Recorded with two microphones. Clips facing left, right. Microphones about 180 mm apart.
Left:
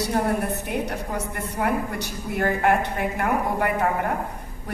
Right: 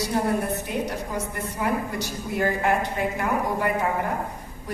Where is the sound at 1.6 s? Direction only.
55° left (ahead or behind).